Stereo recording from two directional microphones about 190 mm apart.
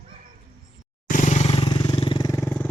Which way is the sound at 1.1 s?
40° left (ahead or behind).